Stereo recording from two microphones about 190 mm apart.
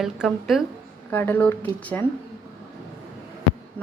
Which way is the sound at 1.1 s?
10° left (ahead or behind).